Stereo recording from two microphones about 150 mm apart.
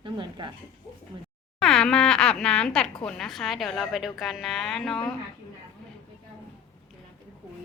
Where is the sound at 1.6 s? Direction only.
5° left (ahead or behind).